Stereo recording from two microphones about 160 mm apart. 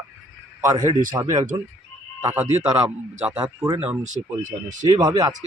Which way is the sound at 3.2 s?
10° right (ahead or behind).